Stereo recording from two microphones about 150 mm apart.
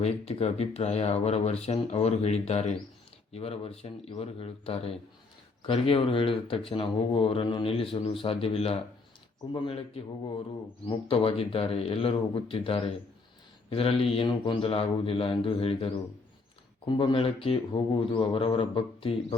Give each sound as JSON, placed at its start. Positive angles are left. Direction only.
{"t": 0.0, "sound": "speech", "side_deg": 45}